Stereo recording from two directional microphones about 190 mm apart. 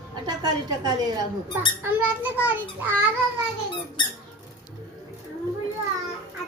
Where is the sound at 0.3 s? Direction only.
20° right (ahead or behind).